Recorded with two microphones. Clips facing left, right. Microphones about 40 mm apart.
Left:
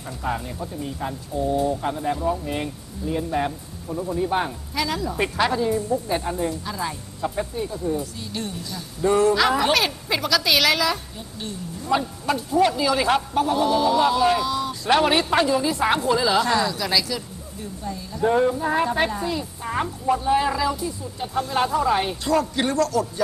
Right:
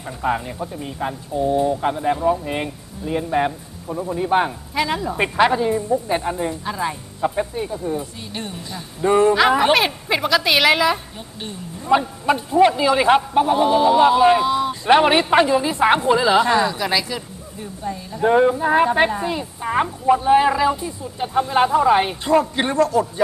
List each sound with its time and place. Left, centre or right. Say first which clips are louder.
0.2 s speech: right 5 dB; right